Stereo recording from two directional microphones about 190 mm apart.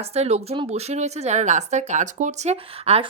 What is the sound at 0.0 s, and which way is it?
A woman's voice, 35° right (ahead or behind).